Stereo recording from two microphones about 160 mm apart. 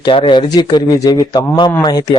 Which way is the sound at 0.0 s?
30° left (ahead or behind).